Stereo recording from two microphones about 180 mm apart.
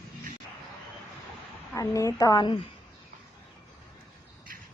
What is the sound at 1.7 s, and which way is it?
Speech, 15° left (ahead or behind).